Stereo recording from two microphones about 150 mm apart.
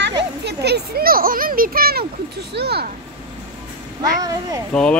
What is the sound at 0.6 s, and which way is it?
Speech, 85° right.